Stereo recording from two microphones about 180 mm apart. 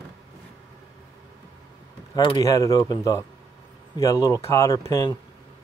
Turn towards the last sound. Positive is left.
turn(degrees=20)  # may be behind; listen again after turning